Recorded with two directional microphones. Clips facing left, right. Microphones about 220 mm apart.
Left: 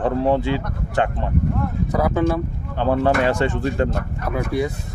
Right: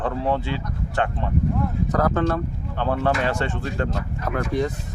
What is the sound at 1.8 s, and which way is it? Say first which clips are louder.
Speech: left 3 dB; 10° left (ahead or behind).